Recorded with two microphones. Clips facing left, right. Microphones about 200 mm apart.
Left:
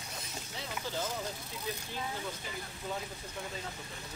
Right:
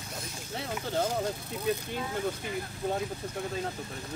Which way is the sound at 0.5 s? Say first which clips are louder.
Right 7 dB; 55° right (ahead or behind).